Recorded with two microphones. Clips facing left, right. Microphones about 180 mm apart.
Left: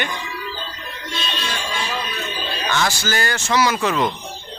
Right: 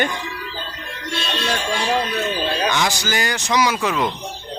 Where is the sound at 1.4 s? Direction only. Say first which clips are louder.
Right 7 dB; 60° right (ahead or behind).